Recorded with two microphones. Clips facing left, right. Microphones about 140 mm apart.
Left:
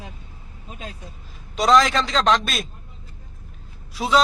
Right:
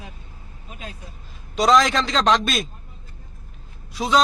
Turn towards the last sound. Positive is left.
turn(degrees=5)  # may be behind; listen again after turning